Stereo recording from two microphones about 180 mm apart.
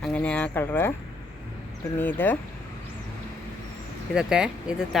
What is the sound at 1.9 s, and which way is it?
Speech, 10° left (ahead or behind).